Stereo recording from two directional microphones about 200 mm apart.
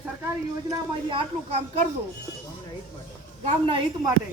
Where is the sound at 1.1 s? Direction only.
30° right (ahead or behind).